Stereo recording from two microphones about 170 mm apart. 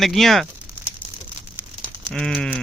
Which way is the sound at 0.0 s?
Centre (ahead or behind).